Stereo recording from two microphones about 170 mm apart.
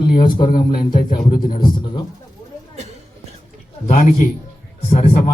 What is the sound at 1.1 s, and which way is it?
Speech, 50° left (ahead or behind).